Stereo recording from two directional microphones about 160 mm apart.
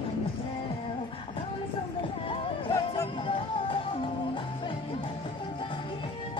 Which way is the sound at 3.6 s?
35° left (ahead or behind).